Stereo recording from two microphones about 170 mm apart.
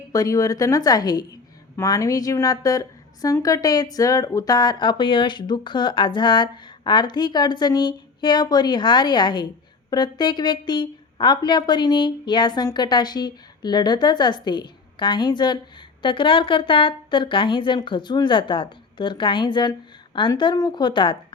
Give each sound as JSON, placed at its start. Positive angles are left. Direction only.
{"t": 0.1, "sound": "a woman's voice", "side_deg": 20}